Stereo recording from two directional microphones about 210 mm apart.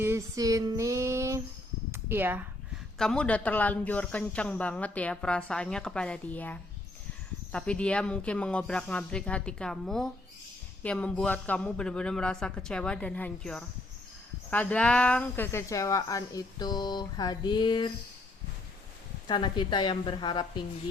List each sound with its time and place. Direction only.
0.0 s female singing: 15° right (ahead or behind)
1.9 s a sound: 10° right (ahead or behind)
3.0 s speech: 5° left (ahead or behind); by 17.9 s 20° left (ahead or behind)
19.3 s a woman's voice: 20° left (ahead or behind)